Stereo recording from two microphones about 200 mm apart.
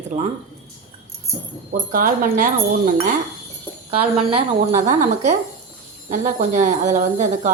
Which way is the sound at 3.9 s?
30° right (ahead or behind).